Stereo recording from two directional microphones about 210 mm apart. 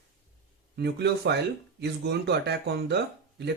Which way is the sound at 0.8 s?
50° right (ahead or behind).